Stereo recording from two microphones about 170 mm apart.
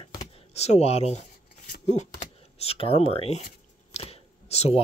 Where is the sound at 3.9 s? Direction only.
40° left (ahead or behind).